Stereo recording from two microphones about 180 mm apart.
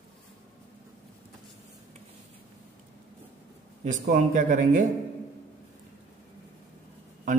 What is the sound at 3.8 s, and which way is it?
A man's voice, 45° right (ahead or behind).